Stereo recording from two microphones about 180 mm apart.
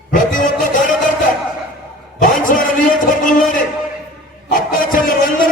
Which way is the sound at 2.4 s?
50° left (ahead or behind).